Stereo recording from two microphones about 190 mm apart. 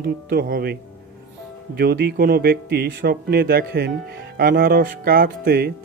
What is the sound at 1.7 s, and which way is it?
Speech, 55° right (ahead or behind).